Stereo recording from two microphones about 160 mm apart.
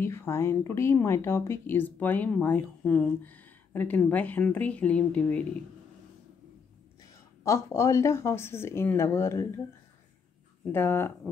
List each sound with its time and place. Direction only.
0.0 s a woman's voice: 15° left (ahead or behind)
7.4 s a woman's voice: 20° left (ahead or behind)
10.6 s a woman's voice: 15° left (ahead or behind)